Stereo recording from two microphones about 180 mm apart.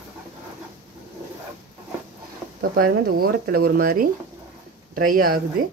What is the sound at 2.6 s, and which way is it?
A woman's voice, 60° right (ahead or behind).